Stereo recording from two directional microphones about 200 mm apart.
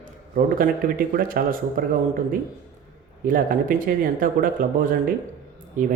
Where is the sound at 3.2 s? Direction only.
45° right (ahead or behind).